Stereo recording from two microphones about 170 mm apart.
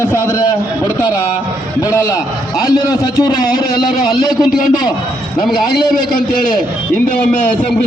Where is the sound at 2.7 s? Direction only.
20° left (ahead or behind).